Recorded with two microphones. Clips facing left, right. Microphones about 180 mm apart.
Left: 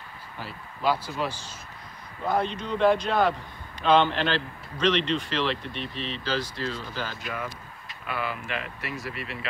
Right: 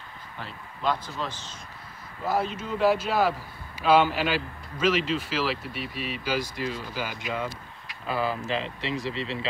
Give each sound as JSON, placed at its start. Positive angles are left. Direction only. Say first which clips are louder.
{"t": 0.4, "sound": "speech", "louder": "left 2 dB", "side_deg": 5}
{"t": 2.2, "sound": "a man's voice", "louder": "left 1 dB", "side_deg": -5}
{"t": 8.1, "sound": "speech", "louder": "right 4 dB", "side_deg": -35}